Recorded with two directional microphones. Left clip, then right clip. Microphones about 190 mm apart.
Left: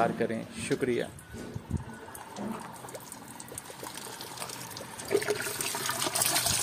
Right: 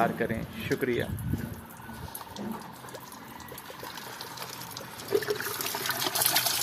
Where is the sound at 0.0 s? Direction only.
15° left (ahead or behind).